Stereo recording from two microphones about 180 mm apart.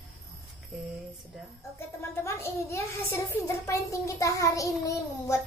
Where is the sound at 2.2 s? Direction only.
15° left (ahead or behind).